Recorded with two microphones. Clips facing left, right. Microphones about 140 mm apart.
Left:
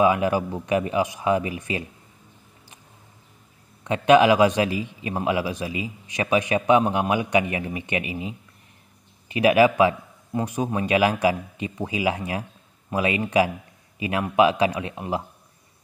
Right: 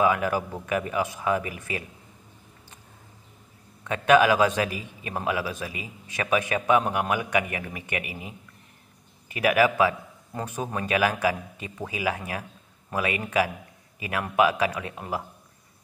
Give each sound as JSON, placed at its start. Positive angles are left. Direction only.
{"t": 0.0, "sound": "a man's voice", "side_deg": 20}
{"t": 3.8, "sound": "a man's voice", "side_deg": 20}